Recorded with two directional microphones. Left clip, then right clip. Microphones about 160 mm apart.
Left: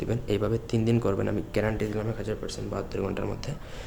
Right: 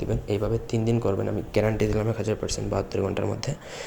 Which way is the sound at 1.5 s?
5° right (ahead or behind).